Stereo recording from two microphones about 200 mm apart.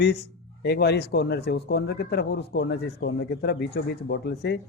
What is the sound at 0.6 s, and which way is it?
A man's voice, 55° left (ahead or behind).